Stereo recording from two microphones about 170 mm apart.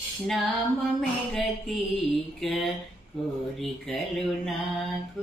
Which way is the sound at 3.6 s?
Centre (ahead or behind).